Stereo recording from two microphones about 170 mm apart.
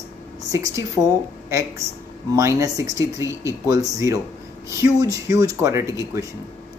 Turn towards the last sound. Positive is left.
turn(degrees=-15)  # may be behind; listen again after turning